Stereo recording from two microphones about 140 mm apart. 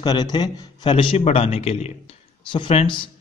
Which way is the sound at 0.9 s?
40° left (ahead or behind).